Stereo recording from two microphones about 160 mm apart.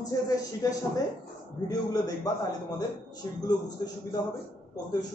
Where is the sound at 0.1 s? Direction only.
20° left (ahead or behind).